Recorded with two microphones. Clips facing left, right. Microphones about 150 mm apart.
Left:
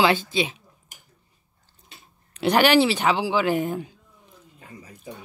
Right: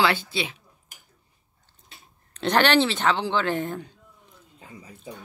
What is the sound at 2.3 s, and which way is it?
Speech, 10° left (ahead or behind).